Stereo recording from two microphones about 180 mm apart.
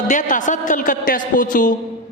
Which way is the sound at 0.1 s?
45° left (ahead or behind).